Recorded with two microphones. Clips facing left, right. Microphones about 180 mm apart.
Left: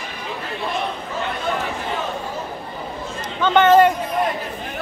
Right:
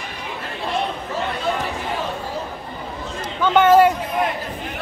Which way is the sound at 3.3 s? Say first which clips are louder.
Even; 5° right (ahead or behind).